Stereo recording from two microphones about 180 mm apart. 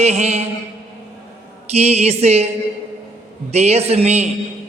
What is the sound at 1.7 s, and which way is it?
Speech, 35° right (ahead or behind).